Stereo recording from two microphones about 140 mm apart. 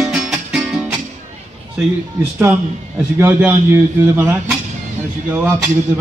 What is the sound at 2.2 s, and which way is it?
A man's voice, 15° right (ahead or behind).